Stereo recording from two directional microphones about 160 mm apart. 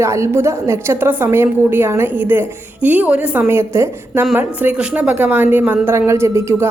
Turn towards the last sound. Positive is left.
turn(degrees=-15)  # may be behind; listen again after turning